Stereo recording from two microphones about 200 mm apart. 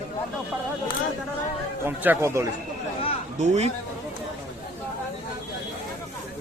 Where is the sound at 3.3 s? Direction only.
35° right (ahead or behind).